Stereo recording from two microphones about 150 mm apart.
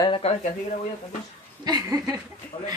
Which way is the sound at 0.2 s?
45° left (ahead or behind).